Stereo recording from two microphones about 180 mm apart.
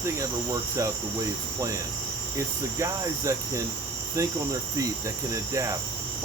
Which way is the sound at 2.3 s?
15° right (ahead or behind).